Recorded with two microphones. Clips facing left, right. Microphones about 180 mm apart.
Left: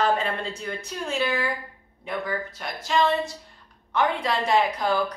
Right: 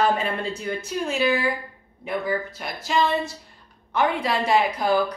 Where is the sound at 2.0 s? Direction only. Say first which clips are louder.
Right 3 dB; 5° right (ahead or behind).